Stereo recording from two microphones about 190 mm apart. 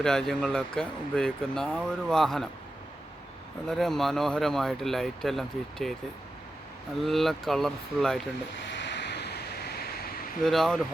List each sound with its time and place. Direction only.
0.0 s speech: 5° left (ahead or behind)
3.7 s speech: centre (ahead or behind)
7.0 s speech: centre (ahead or behind)
8.6 s vehicle: 70° left (ahead or behind)
10.4 s speech: centre (ahead or behind)